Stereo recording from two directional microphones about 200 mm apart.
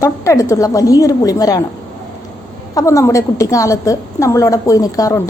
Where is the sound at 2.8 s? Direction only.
15° left (ahead or behind).